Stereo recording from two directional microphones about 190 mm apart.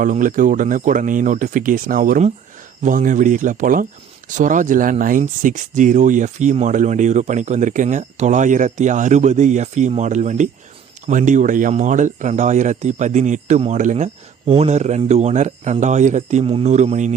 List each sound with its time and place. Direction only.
0.0 s speech: 45° right (ahead or behind)